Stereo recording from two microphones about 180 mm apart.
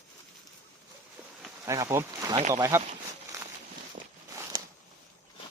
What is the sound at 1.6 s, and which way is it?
Speech, 15° right (ahead or behind).